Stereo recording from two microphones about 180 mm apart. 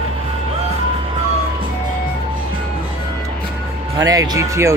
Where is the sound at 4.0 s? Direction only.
20° right (ahead or behind).